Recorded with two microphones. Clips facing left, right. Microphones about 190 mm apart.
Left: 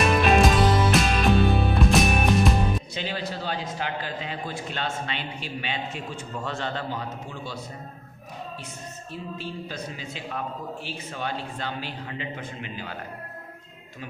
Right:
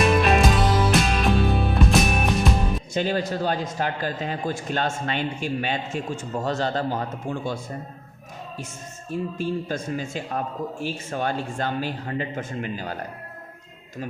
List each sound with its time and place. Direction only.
0.1 s music: centre (ahead or behind)
2.9 s a man's voice: 45° right (ahead or behind)
9.0 s a man's voice: 45° right (ahead or behind)